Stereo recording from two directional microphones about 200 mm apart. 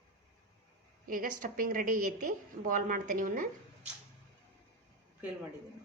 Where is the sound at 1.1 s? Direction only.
45° right (ahead or behind).